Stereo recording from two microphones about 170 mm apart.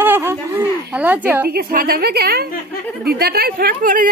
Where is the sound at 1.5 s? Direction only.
60° right (ahead or behind).